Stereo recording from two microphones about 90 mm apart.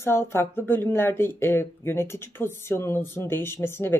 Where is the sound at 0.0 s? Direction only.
30° left (ahead or behind).